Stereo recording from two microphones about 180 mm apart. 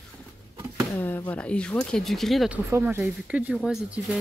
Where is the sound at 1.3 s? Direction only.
5° left (ahead or behind).